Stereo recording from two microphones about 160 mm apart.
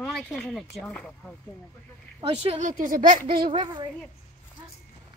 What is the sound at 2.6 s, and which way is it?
Speech, 60° right (ahead or behind).